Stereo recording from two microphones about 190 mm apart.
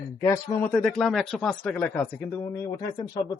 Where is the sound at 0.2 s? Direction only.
20° left (ahead or behind).